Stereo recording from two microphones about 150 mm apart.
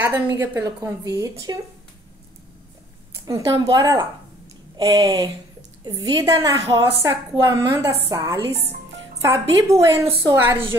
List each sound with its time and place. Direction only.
0.0 s a woman's voice: 15° right (ahead or behind)
3.3 s a woman's voice: 20° right (ahead or behind)